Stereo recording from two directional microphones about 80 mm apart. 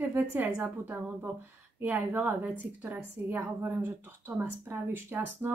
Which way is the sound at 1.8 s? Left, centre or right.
Right.